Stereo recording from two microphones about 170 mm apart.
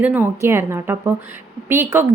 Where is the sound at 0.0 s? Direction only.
10° right (ahead or behind).